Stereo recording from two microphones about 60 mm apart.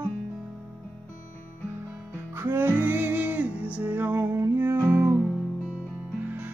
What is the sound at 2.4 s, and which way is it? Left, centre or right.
Music, right.